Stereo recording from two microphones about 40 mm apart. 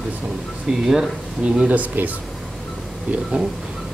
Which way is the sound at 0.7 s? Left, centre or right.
Centre.